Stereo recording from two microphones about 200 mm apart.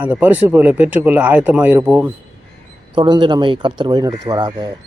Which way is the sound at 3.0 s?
25° right (ahead or behind).